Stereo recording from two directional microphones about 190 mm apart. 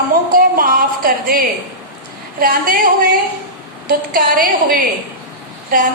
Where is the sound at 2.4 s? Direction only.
50° right (ahead or behind).